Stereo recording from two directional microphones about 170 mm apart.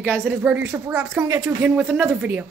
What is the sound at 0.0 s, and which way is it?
Speech, 10° right (ahead or behind).